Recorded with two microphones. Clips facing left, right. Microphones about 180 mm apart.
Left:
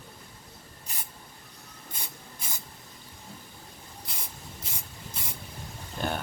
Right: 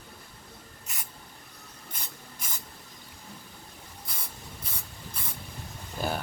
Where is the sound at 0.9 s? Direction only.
35° left (ahead or behind).